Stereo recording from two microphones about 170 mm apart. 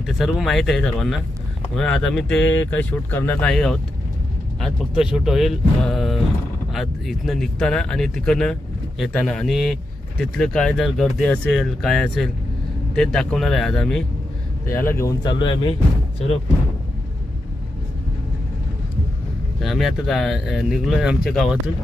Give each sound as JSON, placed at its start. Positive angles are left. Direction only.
{"t": 0.0, "sound": "speech", "side_deg": 0}
{"t": 14.7, "sound": "speech", "side_deg": 15}
{"t": 19.6, "sound": "speech", "side_deg": 0}